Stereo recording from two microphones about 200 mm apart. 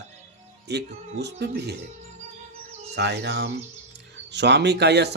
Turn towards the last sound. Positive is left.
turn(degrees=-55)  # may be behind; listen again after turning